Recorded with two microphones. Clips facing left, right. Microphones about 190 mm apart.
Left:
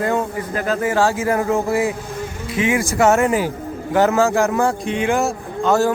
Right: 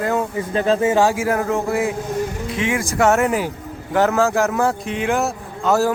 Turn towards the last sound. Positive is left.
turn(degrees=-5)  # may be behind; listen again after turning